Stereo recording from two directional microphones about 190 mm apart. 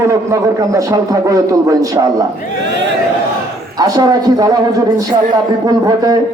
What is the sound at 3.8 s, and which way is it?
A man's voice, 20° right (ahead or behind).